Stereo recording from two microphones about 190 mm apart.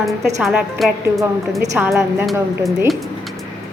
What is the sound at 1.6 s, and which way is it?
Speech, 10° right (ahead or behind).